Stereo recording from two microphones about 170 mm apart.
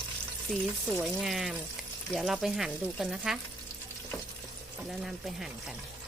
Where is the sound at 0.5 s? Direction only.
Centre (ahead or behind).